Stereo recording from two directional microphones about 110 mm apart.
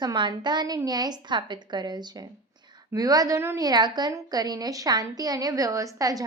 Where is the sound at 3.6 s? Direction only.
40° right (ahead or behind).